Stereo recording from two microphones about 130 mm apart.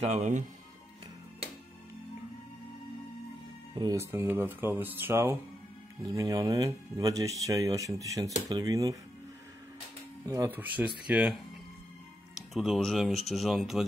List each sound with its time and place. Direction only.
0.0 s speech: 70° right (ahead or behind)
3.9 s speech: 20° right (ahead or behind)
10.2 s speech: 25° right (ahead or behind)
11.1 s speech: 10° right (ahead or behind)
12.5 s speech: centre (ahead or behind)